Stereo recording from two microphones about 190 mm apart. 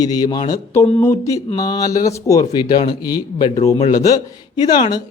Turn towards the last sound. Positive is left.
turn(degrees=20)  # may be behind; listen again after turning